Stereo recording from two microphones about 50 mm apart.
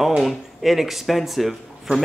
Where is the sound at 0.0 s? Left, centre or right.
Centre.